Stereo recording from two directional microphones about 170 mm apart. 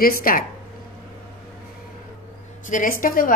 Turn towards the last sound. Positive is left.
turn(degrees=55)  # may be behind; listen again after turning